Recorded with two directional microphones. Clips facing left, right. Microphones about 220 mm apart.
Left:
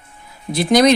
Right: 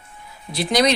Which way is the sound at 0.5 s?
50° left (ahead or behind).